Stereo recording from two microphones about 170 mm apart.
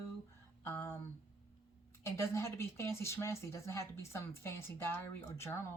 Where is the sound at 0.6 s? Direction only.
15° left (ahead or behind).